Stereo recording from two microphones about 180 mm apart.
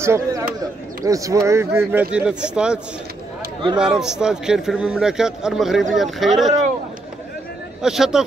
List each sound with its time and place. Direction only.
0.0 s a sound: 15° right (ahead or behind)
1.0 s a man's voice: 20° right (ahead or behind); by 6.5 s centre (ahead or behind)
7.8 s a man's voice: 5° right (ahead or behind)